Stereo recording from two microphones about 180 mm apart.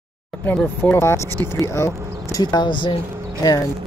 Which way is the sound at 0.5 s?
10° left (ahead or behind).